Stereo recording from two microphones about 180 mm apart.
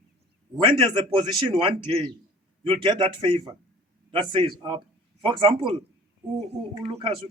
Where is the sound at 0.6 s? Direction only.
25° right (ahead or behind).